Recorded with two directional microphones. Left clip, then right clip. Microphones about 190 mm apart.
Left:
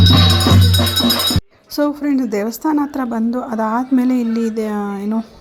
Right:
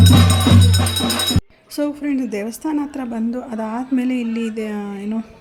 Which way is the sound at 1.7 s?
15° left (ahead or behind).